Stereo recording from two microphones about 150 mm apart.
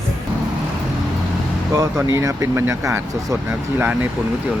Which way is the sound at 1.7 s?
20° right (ahead or behind).